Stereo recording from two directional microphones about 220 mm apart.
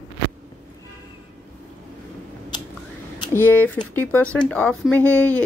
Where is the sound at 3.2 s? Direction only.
10° left (ahead or behind).